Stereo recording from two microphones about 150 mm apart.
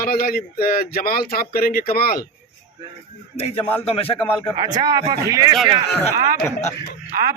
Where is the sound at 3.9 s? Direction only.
40° left (ahead or behind).